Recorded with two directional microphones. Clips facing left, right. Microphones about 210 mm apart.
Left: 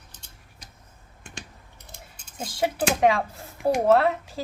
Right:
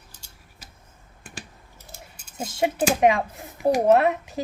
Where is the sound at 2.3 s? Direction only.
25° right (ahead or behind).